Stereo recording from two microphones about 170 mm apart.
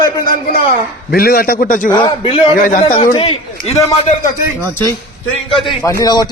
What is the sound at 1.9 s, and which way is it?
Speech, 25° left (ahead or behind).